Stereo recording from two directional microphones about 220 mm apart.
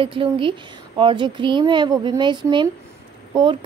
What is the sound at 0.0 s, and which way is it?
Speech, 25° right (ahead or behind).